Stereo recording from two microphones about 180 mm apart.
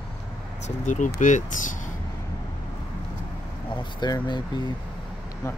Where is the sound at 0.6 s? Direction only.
45° left (ahead or behind).